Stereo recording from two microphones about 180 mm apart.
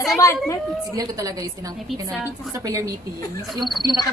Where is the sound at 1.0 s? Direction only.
20° right (ahead or behind).